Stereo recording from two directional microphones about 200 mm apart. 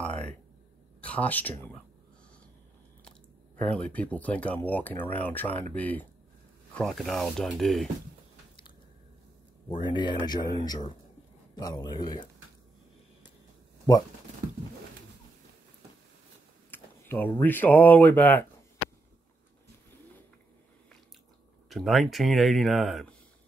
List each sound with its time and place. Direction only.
0.0 s a sound: 5° left (ahead or behind)
1.0 s speech: 5° left (ahead or behind)
3.1 s speech: 5° left (ahead or behind)
9.7 s speech: 20° left (ahead or behind)
16.7 s speech: 10° left (ahead or behind)
21.6 s speech: centre (ahead or behind)